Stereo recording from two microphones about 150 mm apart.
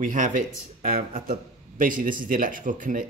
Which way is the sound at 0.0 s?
60° right (ahead or behind).